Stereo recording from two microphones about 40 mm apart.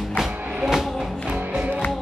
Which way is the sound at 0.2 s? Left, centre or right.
Centre.